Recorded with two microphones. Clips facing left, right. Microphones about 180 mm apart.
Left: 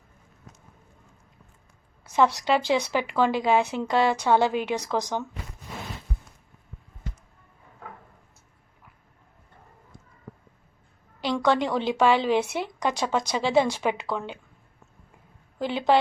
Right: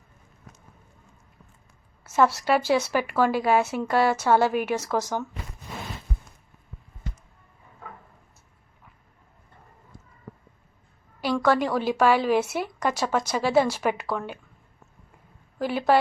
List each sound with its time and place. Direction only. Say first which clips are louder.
2.0 s speech: right 1 dB; 15° left (ahead or behind)
11.2 s a woman's voice: right 1 dB; 20° left (ahead or behind)
15.5 s a woman's voice: right 1 dB; 20° left (ahead or behind)